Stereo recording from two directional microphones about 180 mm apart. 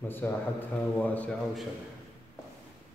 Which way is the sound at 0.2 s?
10° left (ahead or behind).